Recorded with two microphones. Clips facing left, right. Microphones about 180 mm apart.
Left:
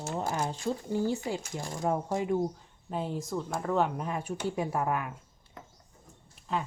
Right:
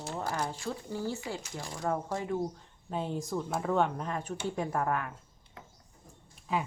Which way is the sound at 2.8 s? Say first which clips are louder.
Even; centre (ahead or behind).